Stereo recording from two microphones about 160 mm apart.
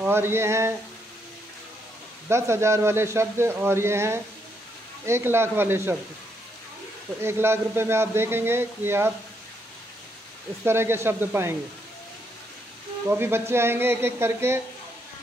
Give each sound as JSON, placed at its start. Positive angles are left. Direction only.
{"t": 0.0, "sound": "a man's voice", "side_deg": -15}
{"t": 2.2, "sound": "a man's voice", "side_deg": -15}
{"t": 7.2, "sound": "a man's voice", "side_deg": -15}
{"t": 10.6, "sound": "a man's voice", "side_deg": -15}
{"t": 13.1, "sound": "a man's voice", "side_deg": -15}